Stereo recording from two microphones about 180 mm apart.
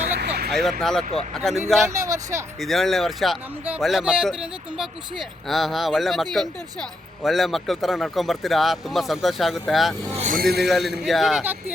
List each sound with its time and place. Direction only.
0.2 s vehicle: 60° right (ahead or behind)
0.8 s speech: centre (ahead or behind)
1.9 s speech: 20° right (ahead or behind)
2.6 s speech: centre (ahead or behind)
10.2 s speech: 45° right (ahead or behind)
10.4 s a man's voice: 65° right (ahead or behind)
10.7 s speech: centre (ahead or behind)